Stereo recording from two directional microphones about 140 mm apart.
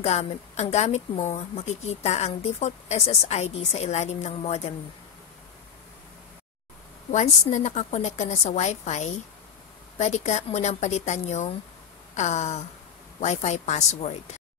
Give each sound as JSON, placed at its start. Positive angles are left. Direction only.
{"t": 0.0, "sound": "a woman's voice", "side_deg": 50}
{"t": 7.1, "sound": "a woman's voice", "side_deg": 60}